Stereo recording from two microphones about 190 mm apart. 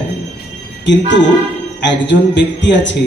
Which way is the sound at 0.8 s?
70° left (ahead or behind).